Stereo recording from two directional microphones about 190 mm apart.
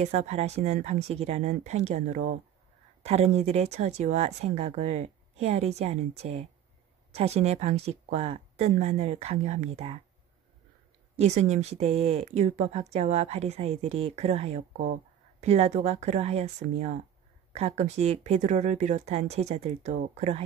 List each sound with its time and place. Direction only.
0.0 s speech: 35° right (ahead or behind)
11.1 s speech: 35° right (ahead or behind)